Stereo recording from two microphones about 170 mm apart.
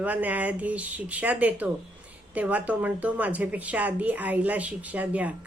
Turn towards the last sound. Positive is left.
turn(degrees=-10)  # may be behind; listen again after turning